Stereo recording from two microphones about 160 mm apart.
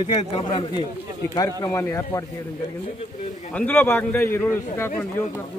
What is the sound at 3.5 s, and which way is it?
A man's voice, 10° left (ahead or behind).